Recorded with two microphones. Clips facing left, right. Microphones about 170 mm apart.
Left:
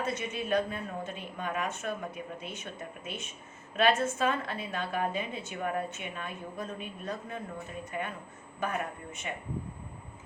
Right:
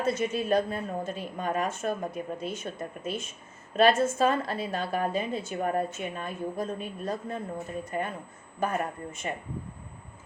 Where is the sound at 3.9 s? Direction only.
90° right.